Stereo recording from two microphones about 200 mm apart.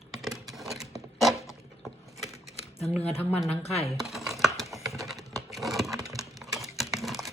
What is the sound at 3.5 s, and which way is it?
Speech, 30° left (ahead or behind).